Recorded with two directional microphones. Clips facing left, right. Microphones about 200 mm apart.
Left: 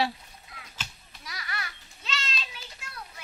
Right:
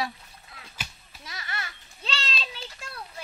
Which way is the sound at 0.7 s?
10° right (ahead or behind).